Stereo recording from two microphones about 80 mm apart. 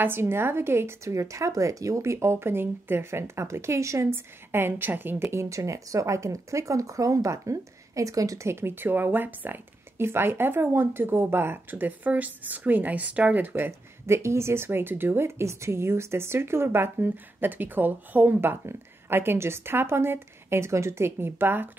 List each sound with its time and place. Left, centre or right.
0.0 s a woman's voice: right
13.7 s speech: right